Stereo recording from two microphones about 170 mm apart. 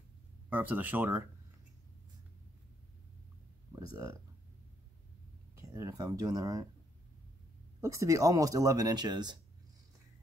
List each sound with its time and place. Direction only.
0.5 s speech: 10° right (ahead or behind)
3.7 s speech: 15° right (ahead or behind)
5.6 s speech: 20° right (ahead or behind)
7.8 s speech: 20° right (ahead or behind)